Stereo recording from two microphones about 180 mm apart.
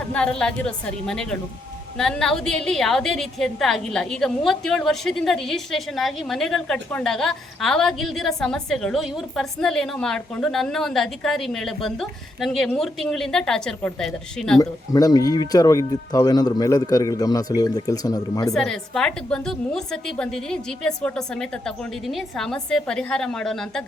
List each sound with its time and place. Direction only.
0.0 s a woman's voice: 5° left (ahead or behind)
14.6 s speech: 20° left (ahead or behind)
18.5 s a woman's voice: 5° left (ahead or behind)